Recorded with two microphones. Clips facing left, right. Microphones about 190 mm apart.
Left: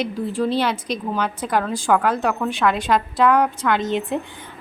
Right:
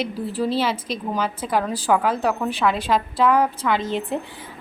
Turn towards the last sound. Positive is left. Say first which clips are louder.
# left 2 dB
turn(degrees=-5)  # may be behind; listen again after turning